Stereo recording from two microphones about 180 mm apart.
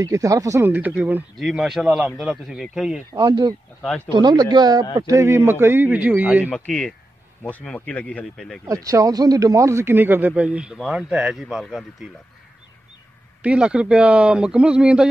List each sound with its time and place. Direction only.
0.0 s speech: 20° right (ahead or behind); by 3.0 s centre (ahead or behind)
3.1 s speech: 20° right (ahead or behind)
3.8 s speech: 5° left (ahead or behind)
4.1 s a man's voice: 25° right (ahead or behind)
7.4 s speech: 5° left (ahead or behind)
8.6 s a man's voice: 20° right (ahead or behind); by 12.1 s centre (ahead or behind)
13.4 s speech: 5° right (ahead or behind)